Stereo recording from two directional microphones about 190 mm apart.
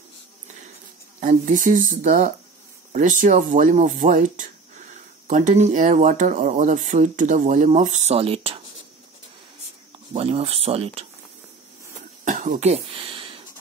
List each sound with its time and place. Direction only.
1.2 s speech: 40° right (ahead or behind)
10.1 s speech: 30° right (ahead or behind)
12.3 s throat clearing: 40° right (ahead or behind)